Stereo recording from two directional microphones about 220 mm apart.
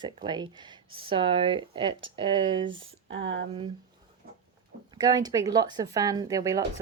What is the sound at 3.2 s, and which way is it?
Speech, 60° right (ahead or behind).